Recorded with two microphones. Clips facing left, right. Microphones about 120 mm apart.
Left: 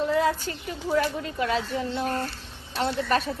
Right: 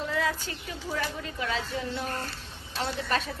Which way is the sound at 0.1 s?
40° left (ahead or behind).